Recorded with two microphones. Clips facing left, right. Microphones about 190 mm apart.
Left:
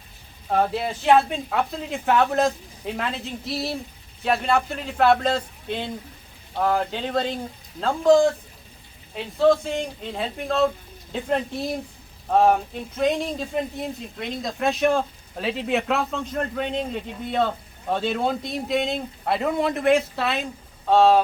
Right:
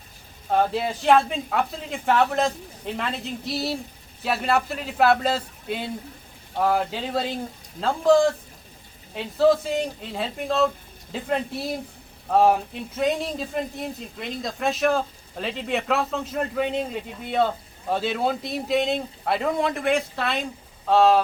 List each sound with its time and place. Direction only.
0.5 s speech: centre (ahead or behind)
13.0 s speech: centre (ahead or behind)